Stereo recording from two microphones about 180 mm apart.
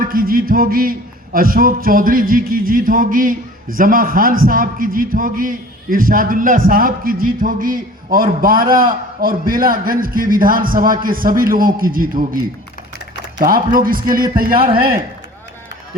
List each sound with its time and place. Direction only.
0.0 s a man's voice: 55° right (ahead or behind)
13.4 s a man's voice: 50° right (ahead or behind)